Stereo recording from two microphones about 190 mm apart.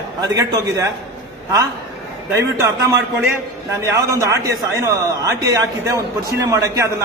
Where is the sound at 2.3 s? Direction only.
15° right (ahead or behind).